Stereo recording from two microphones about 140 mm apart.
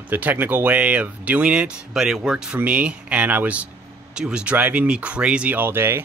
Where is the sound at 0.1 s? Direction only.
15° right (ahead or behind).